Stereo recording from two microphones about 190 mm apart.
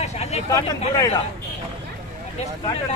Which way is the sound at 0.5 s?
20° left (ahead or behind).